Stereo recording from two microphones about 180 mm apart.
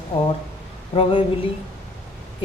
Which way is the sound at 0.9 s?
30° left (ahead or behind).